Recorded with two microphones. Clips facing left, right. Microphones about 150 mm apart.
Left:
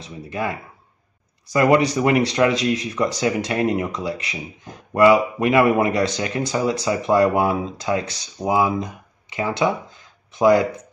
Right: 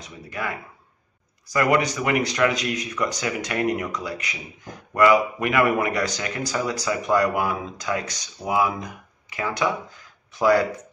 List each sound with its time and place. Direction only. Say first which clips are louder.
0.0 s speech: left 5 dB; 25° left (ahead or behind)